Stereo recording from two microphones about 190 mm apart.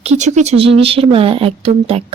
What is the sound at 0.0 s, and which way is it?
Speech, 35° right (ahead or behind).